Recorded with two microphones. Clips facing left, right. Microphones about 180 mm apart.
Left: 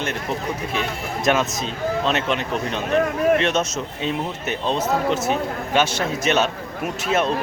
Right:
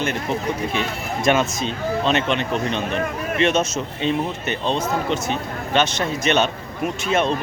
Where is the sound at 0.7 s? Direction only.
Centre (ahead or behind).